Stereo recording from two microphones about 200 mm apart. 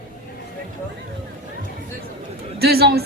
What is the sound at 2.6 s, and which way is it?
Speech, 50° right (ahead or behind).